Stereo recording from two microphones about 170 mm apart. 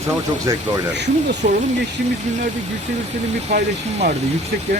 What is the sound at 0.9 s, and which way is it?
Speech, 90° right.